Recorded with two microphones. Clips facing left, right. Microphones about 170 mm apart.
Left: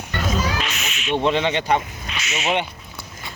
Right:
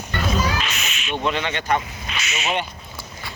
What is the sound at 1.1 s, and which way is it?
Speech, 30° left (ahead or behind).